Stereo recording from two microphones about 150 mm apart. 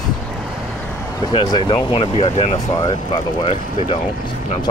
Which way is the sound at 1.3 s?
30° left (ahead or behind).